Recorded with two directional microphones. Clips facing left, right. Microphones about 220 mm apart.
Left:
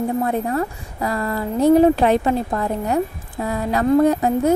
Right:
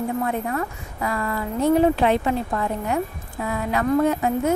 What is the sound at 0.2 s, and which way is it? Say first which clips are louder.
A woman's voice: left 4 dB; 35° left (ahead or behind).